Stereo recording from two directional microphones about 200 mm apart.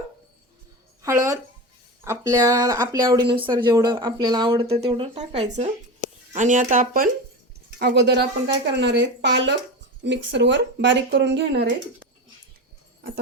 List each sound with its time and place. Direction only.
1.0 s speech: 15° right (ahead or behind); by 7.1 s 45° right (ahead or behind)
7.8 s speech: 55° right (ahead or behind)